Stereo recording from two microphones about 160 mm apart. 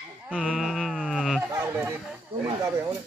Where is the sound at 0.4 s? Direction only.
Centre (ahead or behind).